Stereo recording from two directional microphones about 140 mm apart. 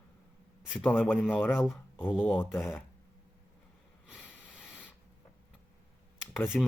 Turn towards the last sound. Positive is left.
turn(degrees=0)  # may be behind; listen again after turning